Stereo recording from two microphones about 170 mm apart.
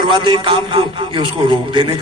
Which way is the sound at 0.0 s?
30° right (ahead or behind).